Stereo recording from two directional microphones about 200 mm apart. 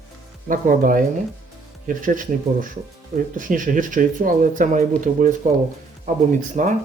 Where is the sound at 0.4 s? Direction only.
40° right (ahead or behind).